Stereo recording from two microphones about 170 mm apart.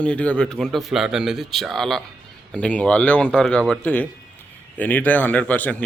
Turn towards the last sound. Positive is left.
turn(degrees=10)  # may be behind; listen again after turning